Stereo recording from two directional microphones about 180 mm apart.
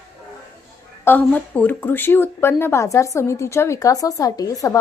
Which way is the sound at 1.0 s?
10° left (ahead or behind).